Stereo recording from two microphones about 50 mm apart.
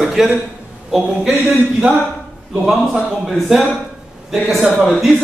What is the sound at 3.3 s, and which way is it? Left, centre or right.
Speech, centre.